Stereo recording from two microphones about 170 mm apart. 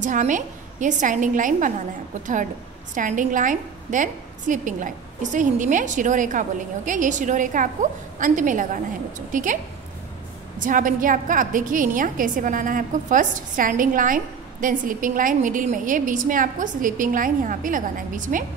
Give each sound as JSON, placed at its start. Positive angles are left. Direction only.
{"t": 0.0, "sound": "a woman's voice", "side_deg": -50}
{"t": 2.9, "sound": "a woman's voice", "side_deg": -50}
{"t": 10.6, "sound": "a woman's voice", "side_deg": -50}